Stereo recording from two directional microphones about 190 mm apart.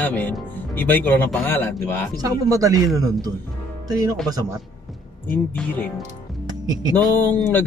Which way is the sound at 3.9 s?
20° right (ahead or behind).